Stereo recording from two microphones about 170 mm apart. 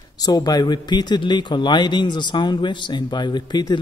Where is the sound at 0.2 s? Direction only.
25° left (ahead or behind).